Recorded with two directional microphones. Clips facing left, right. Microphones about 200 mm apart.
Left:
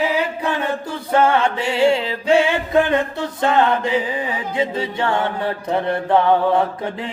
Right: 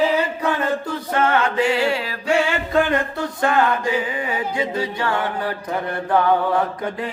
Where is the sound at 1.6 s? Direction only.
25° left (ahead or behind).